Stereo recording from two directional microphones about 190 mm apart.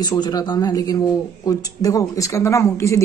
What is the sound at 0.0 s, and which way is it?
A woman's voice, 20° left (ahead or behind).